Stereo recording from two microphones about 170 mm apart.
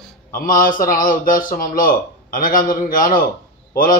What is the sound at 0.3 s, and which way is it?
A man's voice, 55° left (ahead or behind).